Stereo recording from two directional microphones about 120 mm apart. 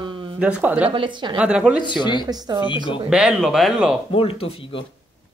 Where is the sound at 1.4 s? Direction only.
10° right (ahead or behind).